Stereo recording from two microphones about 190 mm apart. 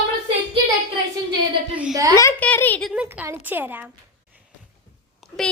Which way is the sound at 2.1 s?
10° left (ahead or behind).